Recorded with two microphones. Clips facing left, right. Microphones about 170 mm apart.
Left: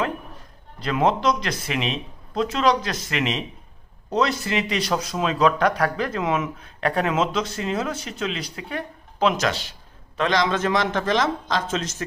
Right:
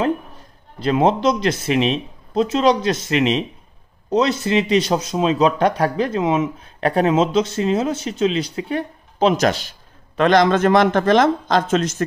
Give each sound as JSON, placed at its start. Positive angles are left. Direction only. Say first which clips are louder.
{"t": 0.7, "sound": "speech", "louder": "right 5 dB", "side_deg": -25}
{"t": 9.4, "sound": "a man's voice", "louder": "right 6 dB", "side_deg": -45}